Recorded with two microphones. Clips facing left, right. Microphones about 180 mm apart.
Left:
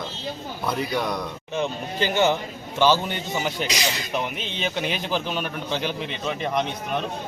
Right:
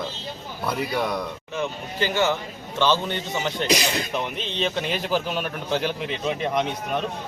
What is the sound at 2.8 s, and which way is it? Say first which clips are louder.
Speech: left 2 dB; 5° left (ahead or behind).